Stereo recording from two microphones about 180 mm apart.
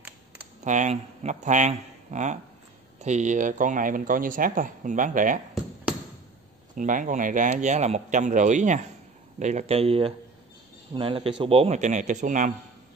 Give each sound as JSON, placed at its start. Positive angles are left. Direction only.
{"t": 0.7, "sound": "speech", "side_deg": -40}
{"t": 6.7, "sound": "speech", "side_deg": -45}